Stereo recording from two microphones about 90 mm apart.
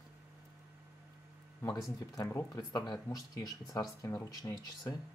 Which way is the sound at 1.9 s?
35° left (ahead or behind).